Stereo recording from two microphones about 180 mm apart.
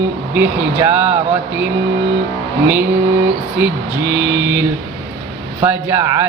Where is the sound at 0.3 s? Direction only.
10° right (ahead or behind).